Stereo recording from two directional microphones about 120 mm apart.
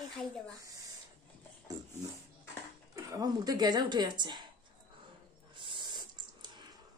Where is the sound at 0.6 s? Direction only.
30° right (ahead or behind).